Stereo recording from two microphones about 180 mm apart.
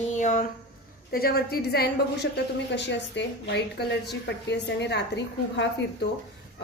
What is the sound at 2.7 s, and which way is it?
A woman's voice, 75° left (ahead or behind).